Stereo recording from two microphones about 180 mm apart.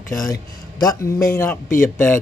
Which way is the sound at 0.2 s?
20° left (ahead or behind).